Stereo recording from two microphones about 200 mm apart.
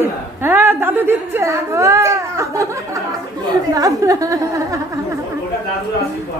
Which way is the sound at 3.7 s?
15° right (ahead or behind).